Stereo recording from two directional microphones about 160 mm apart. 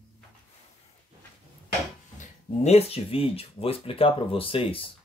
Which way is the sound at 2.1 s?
45° left (ahead or behind).